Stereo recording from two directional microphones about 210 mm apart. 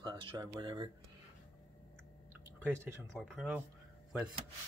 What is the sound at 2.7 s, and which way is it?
Speech, 5° left (ahead or behind).